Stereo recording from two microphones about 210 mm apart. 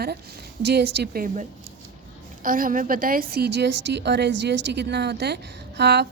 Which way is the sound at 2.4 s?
40° right (ahead or behind).